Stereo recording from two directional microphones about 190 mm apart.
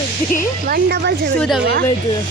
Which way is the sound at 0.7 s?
60° right (ahead or behind).